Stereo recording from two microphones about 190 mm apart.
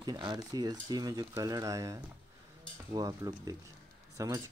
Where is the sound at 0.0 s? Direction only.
20° right (ahead or behind).